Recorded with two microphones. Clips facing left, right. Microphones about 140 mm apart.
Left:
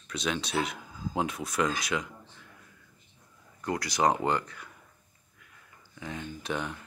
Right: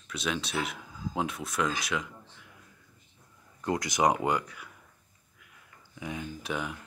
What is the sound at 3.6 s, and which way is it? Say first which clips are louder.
Speech: right 1 dB; 20° right (ahead or behind).